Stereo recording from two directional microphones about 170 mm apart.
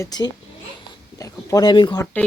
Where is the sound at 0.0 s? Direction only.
25° left (ahead or behind).